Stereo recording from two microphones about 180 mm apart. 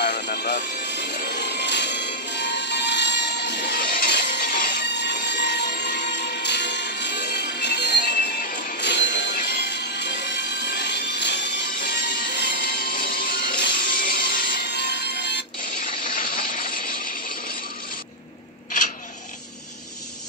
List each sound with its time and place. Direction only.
0.2 s music: 60° left (ahead or behind)
5.2 s music: 70° left (ahead or behind); by 8.8 s 50° left (ahead or behind)
8.8 s music: 70° left (ahead or behind)
16.0 s a sound: 50° left (ahead or behind)